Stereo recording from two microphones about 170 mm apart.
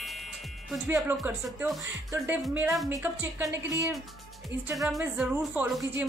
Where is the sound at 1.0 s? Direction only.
15° right (ahead or behind).